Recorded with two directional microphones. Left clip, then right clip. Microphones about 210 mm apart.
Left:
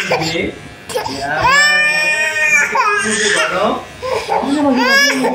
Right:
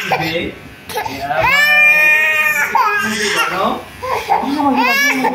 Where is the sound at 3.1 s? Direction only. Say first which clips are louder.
Left 2 dB; 5° right (ahead or behind).